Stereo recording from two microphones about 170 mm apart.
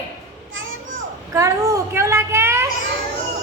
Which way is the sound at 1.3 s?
20° right (ahead or behind).